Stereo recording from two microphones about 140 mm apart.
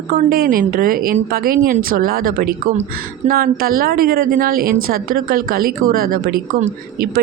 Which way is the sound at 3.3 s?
90° right.